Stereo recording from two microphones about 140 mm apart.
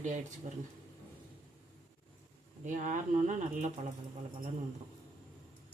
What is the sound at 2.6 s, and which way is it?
Speech, 65° right (ahead or behind).